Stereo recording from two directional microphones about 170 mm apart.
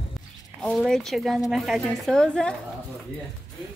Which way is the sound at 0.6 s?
Centre (ahead or behind).